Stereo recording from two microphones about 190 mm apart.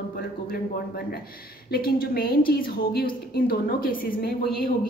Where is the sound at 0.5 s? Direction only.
55° left (ahead or behind).